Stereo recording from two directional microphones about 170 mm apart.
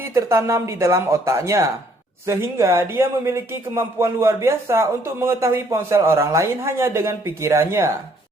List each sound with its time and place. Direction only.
0.0 s speech: 15° right (ahead or behind)